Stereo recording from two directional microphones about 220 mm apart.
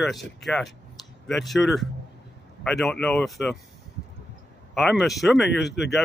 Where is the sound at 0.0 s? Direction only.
Centre (ahead or behind).